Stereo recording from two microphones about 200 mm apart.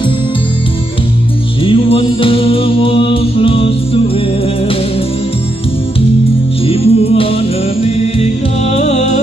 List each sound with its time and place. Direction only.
1.6 s music: 25° left (ahead or behind)
6.7 s music: 30° left (ahead or behind)